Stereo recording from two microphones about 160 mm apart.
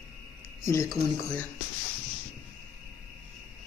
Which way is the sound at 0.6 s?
20° left (ahead or behind).